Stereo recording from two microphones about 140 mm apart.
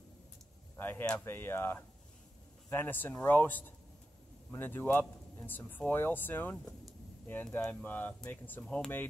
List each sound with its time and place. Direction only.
0.7 s speech: 15° left (ahead or behind)